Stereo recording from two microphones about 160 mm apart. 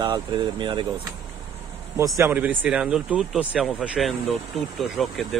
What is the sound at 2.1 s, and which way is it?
Speech, 15° right (ahead or behind).